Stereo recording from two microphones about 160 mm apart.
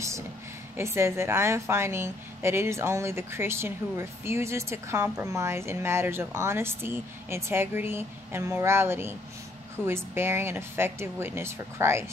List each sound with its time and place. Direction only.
0.7 s a woman's voice: 15° right (ahead or behind)